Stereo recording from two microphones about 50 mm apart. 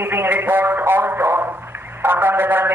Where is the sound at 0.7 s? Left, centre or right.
Right.